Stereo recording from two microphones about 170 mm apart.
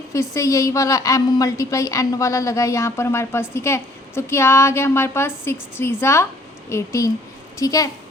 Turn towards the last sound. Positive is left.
turn(degrees=20)  # may be behind; listen again after turning